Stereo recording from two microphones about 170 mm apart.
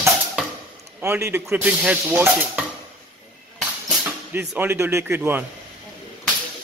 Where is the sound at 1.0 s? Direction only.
15° right (ahead or behind).